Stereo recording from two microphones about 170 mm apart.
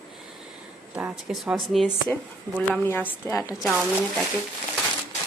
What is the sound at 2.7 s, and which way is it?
Speech, 10° left (ahead or behind).